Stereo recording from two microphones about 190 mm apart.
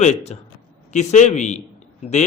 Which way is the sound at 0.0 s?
35° left (ahead or behind).